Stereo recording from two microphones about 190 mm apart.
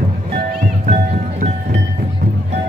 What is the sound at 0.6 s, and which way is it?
Music, 40° right (ahead or behind).